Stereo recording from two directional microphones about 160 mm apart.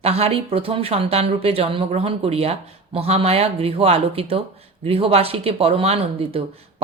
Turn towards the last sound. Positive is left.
turn(degrees=-40)  # may be behind; listen again after turning